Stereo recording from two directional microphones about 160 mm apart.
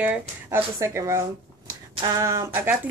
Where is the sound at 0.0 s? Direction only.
15° right (ahead or behind).